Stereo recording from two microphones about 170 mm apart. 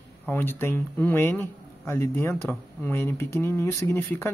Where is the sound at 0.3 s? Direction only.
10° left (ahead or behind).